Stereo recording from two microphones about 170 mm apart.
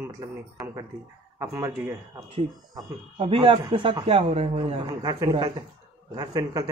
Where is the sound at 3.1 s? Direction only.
30° right (ahead or behind).